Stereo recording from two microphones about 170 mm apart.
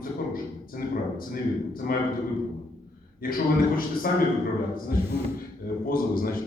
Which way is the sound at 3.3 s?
55° left (ahead or behind).